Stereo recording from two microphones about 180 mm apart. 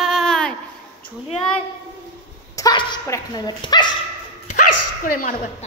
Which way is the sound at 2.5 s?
25° left (ahead or behind).